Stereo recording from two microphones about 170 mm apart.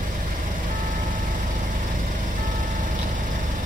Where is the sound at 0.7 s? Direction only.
50° right (ahead or behind).